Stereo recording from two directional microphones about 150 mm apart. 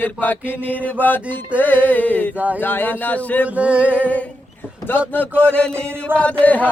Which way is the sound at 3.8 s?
10° left (ahead or behind).